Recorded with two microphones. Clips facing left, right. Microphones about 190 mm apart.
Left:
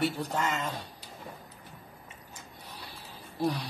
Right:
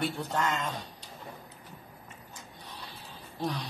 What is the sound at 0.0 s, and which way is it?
Speech, 5° left (ahead or behind).